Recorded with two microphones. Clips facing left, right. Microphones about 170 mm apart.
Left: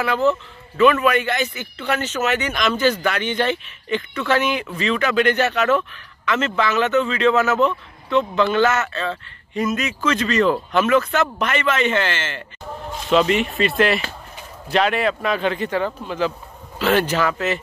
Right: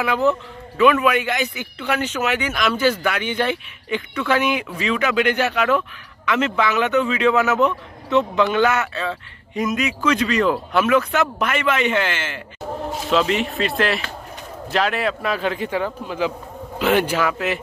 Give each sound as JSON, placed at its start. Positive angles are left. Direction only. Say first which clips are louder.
{"t": 0.0, "sound": "a man's voice", "louder": "even", "side_deg": -15}